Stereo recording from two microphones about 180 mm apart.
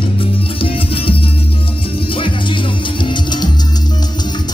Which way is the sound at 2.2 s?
25° left (ahead or behind).